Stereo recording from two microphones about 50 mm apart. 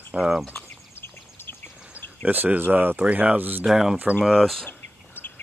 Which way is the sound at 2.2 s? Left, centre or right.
Right.